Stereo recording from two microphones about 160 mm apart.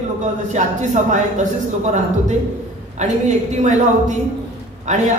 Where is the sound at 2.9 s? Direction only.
45° right (ahead or behind).